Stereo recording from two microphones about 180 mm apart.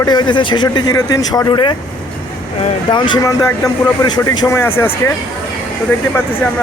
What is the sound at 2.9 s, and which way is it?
Speech, 20° left (ahead or behind).